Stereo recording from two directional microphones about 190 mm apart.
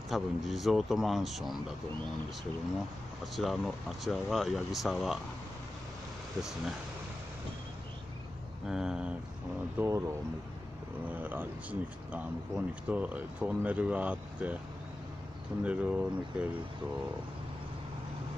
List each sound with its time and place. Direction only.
0.1 s speech: centre (ahead or behind)
3.3 s speech: centre (ahead or behind)
8.6 s speech: 5° right (ahead or behind)
9.8 s speech: 15° right (ahead or behind)
11.1 s speech: 10° right (ahead or behind)
15.6 s speech: 5° right (ahead or behind)